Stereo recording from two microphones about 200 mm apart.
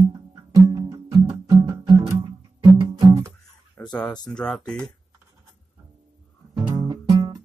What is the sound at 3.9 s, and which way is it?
Speech, 5° left (ahead or behind).